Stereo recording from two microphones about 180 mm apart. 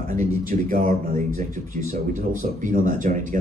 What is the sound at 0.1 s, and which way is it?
A man's voice, 50° right (ahead or behind).